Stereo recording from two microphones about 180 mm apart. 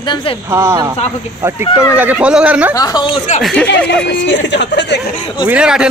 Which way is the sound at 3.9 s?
80° left.